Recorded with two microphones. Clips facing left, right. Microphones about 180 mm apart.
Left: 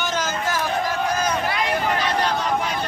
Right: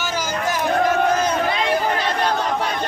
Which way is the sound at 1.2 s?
25° right (ahead or behind).